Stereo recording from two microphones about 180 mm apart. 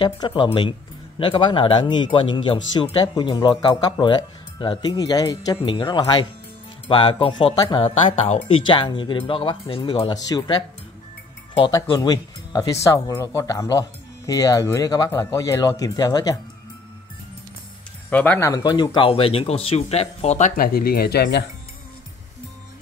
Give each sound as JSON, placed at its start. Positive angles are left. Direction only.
{"t": 0.0, "sound": "speech", "side_deg": 25}
{"t": 18.1, "sound": "speech", "side_deg": 10}
{"t": 18.5, "sound": "speech", "side_deg": 20}